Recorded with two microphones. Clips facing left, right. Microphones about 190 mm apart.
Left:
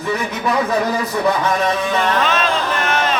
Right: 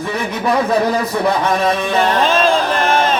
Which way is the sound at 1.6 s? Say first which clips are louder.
Right 3 dB; 30° right (ahead or behind).